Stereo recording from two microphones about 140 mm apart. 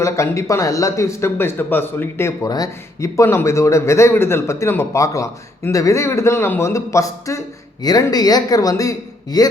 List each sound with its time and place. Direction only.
0.0 s speech: 20° left (ahead or behind)